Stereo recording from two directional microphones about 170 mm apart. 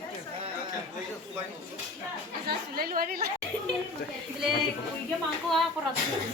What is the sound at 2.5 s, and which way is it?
Speech, 60° right (ahead or behind).